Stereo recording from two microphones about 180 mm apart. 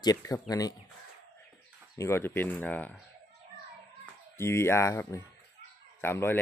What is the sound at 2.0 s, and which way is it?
Speech, 15° left (ahead or behind).